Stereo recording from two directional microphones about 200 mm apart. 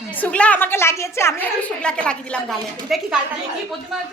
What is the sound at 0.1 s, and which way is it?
A woman's voice, 5° left (ahead or behind).